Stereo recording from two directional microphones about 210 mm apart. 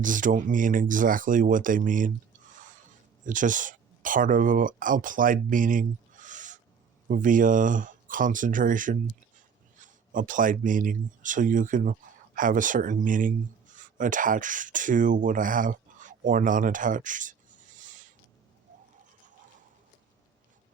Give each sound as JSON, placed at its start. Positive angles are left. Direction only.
{"t": 0.0, "sound": "speech", "side_deg": -40}
{"t": 3.2, "sound": "speech", "side_deg": -40}
{"t": 17.7, "sound": "a sound", "side_deg": -35}